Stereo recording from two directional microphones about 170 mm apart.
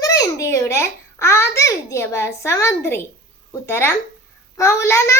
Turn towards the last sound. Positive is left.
turn(degrees=15)  # may be behind; listen again after turning